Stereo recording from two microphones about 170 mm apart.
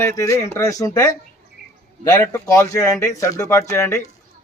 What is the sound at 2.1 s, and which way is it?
Speech, 20° left (ahead or behind).